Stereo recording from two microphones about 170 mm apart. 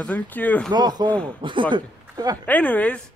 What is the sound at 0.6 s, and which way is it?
Speech, 25° right (ahead or behind).